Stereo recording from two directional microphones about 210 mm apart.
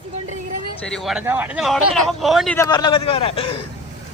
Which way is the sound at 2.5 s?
20° left (ahead or behind).